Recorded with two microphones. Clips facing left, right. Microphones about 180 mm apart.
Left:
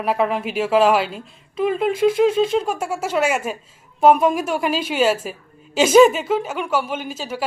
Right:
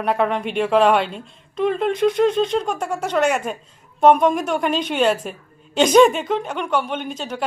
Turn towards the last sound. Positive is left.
turn(degrees=5)  # may be behind; listen again after turning